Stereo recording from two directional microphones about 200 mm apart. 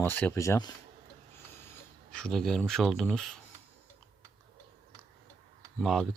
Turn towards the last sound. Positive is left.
turn(degrees=0)  # may be behind; listen again after turning